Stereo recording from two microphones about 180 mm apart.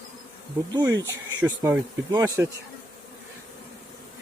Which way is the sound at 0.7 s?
20° right (ahead or behind).